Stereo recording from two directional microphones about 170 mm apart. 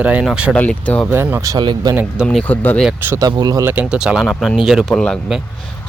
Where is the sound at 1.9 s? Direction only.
Centre (ahead or behind).